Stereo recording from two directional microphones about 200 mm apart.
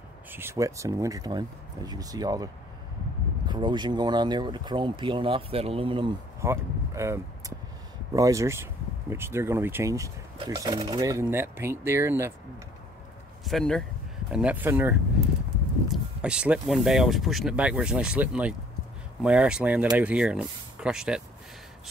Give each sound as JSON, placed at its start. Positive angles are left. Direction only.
{"t": 0.3, "sound": "speech", "side_deg": -10}
{"t": 6.4, "sound": "speech", "side_deg": -15}
{"t": 13.4, "sound": "speech", "side_deg": 0}